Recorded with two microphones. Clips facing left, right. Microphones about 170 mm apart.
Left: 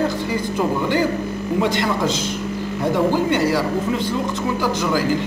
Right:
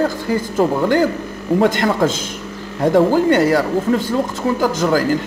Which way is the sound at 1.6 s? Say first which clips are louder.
Right 5 dB; 45° right (ahead or behind).